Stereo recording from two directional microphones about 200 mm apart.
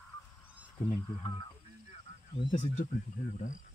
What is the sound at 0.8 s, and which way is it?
Speech, 20° left (ahead or behind).